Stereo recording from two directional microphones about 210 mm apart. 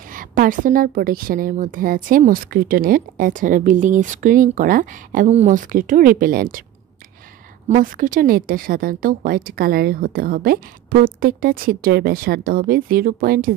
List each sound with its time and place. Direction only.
0.1 s a woman's voice: 40° right (ahead or behind)
7.6 s speech: 40° right (ahead or behind)